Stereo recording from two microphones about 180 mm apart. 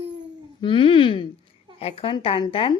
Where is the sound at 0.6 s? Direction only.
30° left (ahead or behind).